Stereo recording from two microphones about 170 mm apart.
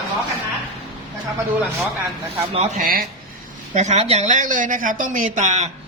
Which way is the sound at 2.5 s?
50° right (ahead or behind).